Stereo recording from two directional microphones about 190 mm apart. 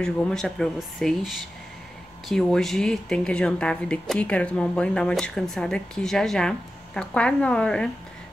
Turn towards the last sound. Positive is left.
turn(degrees=5)  # may be behind; listen again after turning